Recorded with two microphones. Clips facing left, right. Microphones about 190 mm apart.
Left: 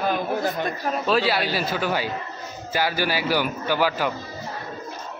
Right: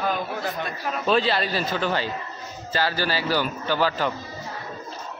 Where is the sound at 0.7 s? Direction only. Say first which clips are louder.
Left 4 dB; 40° left (ahead or behind).